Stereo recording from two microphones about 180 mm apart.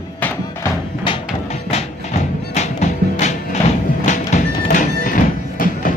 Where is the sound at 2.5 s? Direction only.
40° left (ahead or behind).